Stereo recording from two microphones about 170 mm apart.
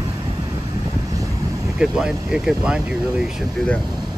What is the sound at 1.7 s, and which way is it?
Speech, 5° right (ahead or behind).